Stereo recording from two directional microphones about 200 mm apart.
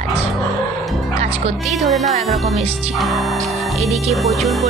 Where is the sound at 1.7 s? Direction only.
Centre (ahead or behind).